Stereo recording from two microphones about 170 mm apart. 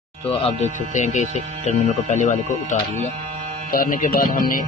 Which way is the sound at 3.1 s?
45° right (ahead or behind).